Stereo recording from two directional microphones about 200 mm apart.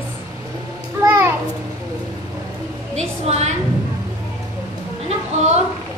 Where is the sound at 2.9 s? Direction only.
30° right (ahead or behind).